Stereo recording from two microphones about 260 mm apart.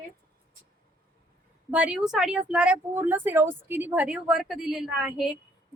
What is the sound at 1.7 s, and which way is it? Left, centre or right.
Speech, centre.